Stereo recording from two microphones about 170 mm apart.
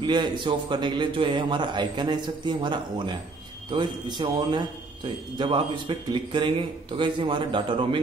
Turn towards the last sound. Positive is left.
turn(degrees=-30)  # may be behind; listen again after turning